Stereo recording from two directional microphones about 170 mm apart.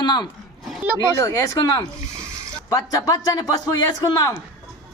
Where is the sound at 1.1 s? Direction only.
20° left (ahead or behind).